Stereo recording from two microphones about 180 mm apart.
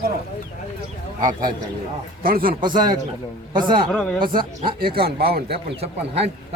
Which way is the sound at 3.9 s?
5° left (ahead or behind).